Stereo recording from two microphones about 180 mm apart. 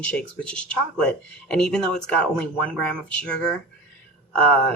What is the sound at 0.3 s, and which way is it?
Speech, 5° left (ahead or behind).